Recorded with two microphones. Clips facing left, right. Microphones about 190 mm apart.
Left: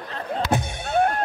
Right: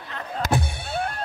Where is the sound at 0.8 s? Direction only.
50° left (ahead or behind).